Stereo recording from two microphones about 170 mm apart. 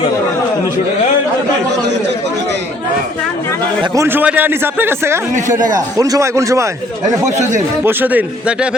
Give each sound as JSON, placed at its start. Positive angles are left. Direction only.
{"t": 3.9, "sound": "a man's voice", "side_deg": -15}
{"t": 5.3, "sound": "a man's voice", "side_deg": -50}
{"t": 5.7, "sound": "speech", "side_deg": -20}
{"t": 7.3, "sound": "a man's voice", "side_deg": -45}
{"t": 7.9, "sound": "a man's voice", "side_deg": -10}